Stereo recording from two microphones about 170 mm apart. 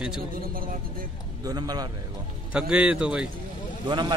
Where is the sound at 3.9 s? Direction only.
25° right (ahead or behind).